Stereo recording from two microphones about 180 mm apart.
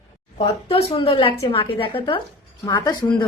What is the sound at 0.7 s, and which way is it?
A woman's voice, 30° left (ahead or behind).